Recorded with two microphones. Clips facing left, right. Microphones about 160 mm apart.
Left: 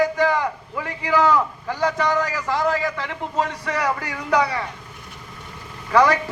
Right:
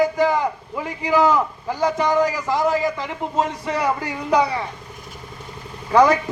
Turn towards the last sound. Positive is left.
turn(degrees=-25)  # may be behind; listen again after turning